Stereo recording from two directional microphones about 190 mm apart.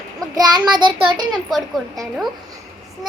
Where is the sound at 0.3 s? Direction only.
20° right (ahead or behind).